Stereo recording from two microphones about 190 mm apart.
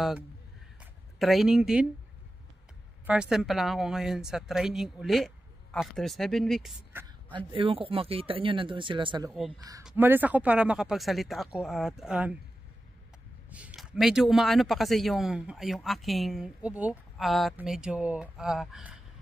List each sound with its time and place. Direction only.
1.2 s a man's voice: centre (ahead or behind)
3.1 s a man's voice: 5° right (ahead or behind)
6.9 s a sound: 10° right (ahead or behind)
7.3 s speech: 25° right (ahead or behind)
9.8 s a man's voice: 10° right (ahead or behind)
13.5 s a man's voice: 5° right (ahead or behind)